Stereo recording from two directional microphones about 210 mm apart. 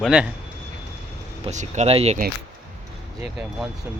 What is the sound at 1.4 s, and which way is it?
Speech, 35° right (ahead or behind).